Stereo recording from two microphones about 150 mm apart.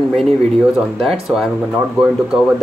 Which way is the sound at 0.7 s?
5° right (ahead or behind).